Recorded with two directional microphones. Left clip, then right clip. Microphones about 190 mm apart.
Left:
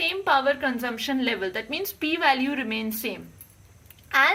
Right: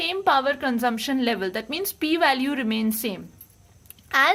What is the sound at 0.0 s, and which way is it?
A woman's voice, 60° right (ahead or behind).